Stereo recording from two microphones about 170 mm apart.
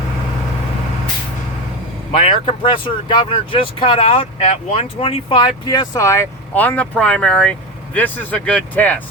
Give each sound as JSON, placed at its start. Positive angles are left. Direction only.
{"t": 2.2, "sound": "speech", "side_deg": 30}
{"t": 4.4, "sound": "speech", "side_deg": 40}